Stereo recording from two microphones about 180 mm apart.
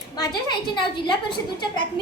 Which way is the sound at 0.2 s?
25° left (ahead or behind).